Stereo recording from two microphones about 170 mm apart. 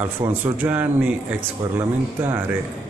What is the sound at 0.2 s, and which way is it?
Speech, 20° right (ahead or behind).